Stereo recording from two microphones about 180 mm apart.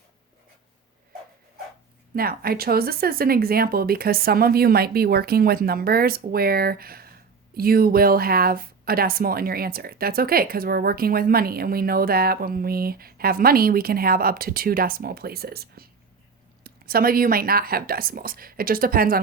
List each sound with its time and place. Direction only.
2.1 s speech: 55° right (ahead or behind)